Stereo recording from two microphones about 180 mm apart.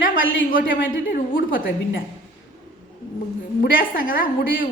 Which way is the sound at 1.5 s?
50° left (ahead or behind).